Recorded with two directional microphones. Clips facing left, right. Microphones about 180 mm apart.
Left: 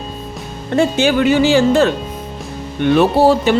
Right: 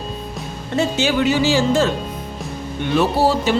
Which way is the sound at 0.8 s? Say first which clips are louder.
Left 4 dB; 55° left (ahead or behind).